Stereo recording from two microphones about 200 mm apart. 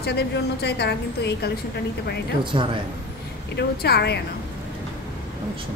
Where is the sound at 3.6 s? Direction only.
55° left (ahead or behind).